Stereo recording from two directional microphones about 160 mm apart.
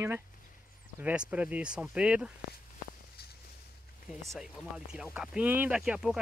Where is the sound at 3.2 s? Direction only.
80° left.